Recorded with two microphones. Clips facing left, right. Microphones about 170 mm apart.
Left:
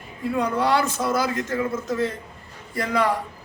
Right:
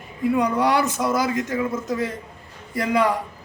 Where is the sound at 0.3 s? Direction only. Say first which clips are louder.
Even; 15° right (ahead or behind).